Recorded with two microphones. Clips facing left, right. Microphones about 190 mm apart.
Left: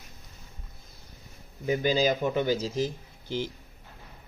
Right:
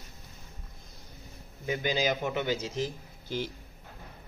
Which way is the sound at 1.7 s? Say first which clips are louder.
Left 4 dB; 40° left (ahead or behind).